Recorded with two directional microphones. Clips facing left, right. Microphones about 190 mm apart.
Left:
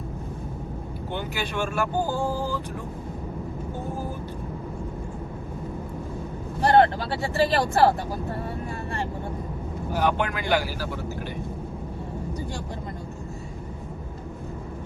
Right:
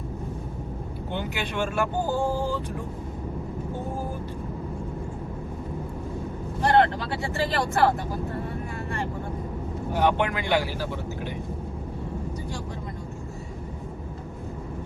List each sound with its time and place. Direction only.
1.1 s speech: 20° right (ahead or behind)
6.6 s speech: 30° left (ahead or behind)
9.9 s speech: 25° right (ahead or behind)